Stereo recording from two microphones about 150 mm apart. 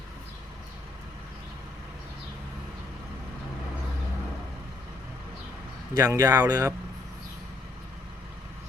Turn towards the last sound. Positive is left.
turn(degrees=-20)  # may be behind; listen again after turning